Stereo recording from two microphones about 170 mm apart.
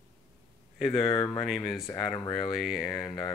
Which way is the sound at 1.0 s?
20° left (ahead or behind).